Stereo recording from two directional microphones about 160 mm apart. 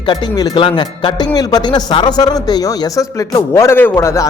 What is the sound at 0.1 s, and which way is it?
Speech, 30° left (ahead or behind).